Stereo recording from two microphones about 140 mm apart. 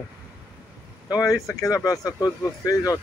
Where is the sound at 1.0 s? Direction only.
25° left (ahead or behind).